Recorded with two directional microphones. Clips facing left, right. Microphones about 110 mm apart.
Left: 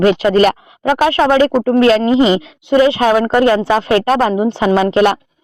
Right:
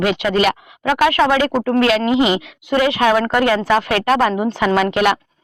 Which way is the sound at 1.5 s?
20° left (ahead or behind).